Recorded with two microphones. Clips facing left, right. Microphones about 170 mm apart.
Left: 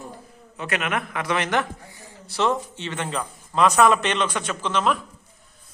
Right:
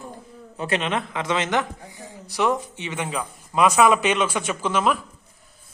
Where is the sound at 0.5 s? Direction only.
30° right (ahead or behind); by 4.9 s 5° right (ahead or behind).